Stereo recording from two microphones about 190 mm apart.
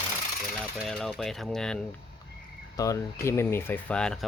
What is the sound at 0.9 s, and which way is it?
Speech, 5° left (ahead or behind).